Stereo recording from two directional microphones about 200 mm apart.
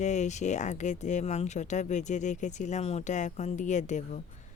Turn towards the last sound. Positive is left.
turn(degrees=35)  # may be behind; listen again after turning